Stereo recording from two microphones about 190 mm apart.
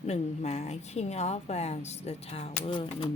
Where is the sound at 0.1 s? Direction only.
35° left (ahead or behind).